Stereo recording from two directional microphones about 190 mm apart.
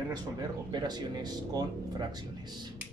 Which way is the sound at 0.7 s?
20° right (ahead or behind).